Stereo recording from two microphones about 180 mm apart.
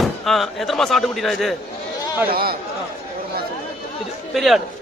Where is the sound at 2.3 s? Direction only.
55° right (ahead or behind).